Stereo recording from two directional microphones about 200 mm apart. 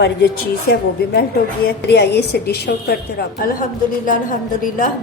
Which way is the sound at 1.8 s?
55° left (ahead or behind).